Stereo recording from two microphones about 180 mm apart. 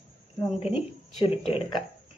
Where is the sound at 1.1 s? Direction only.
30° left (ahead or behind).